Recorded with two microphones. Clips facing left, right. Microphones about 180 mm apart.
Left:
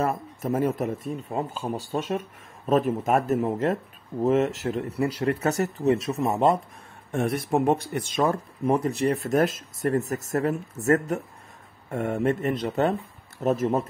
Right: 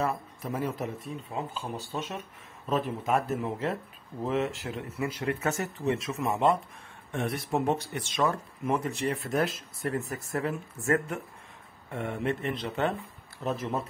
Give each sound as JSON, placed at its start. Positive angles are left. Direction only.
{"t": 0.0, "sound": "speech", "side_deg": 45}